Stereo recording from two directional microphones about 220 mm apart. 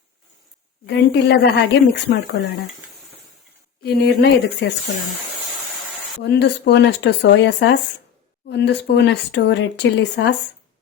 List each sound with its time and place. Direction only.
0.9 s speech: 50° left (ahead or behind)
3.8 s speech: 45° left (ahead or behind)
6.2 s speech: 50° left (ahead or behind)